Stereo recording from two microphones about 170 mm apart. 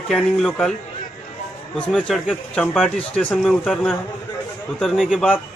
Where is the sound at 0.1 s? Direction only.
Centre (ahead or behind).